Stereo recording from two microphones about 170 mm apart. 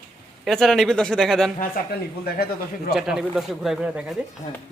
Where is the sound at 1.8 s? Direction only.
60° left (ahead or behind).